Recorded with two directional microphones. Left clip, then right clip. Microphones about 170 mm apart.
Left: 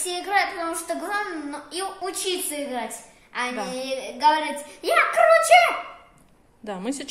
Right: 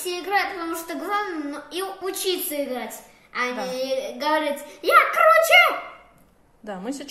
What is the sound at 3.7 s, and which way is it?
Speech, 10° left (ahead or behind).